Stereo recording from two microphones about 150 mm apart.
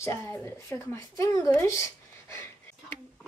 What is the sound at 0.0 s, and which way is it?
Speech, 20° left (ahead or behind).